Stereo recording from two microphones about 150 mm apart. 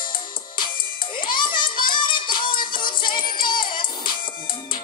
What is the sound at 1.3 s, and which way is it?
Child singing, 30° left (ahead or behind).